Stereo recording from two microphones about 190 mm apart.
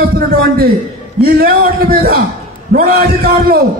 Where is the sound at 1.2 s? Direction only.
50° right (ahead or behind).